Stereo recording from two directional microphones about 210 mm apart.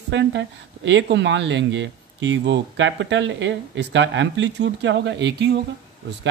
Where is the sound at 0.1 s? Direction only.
60° right (ahead or behind).